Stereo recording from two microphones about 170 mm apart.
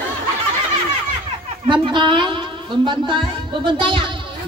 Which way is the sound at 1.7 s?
30° right (ahead or behind).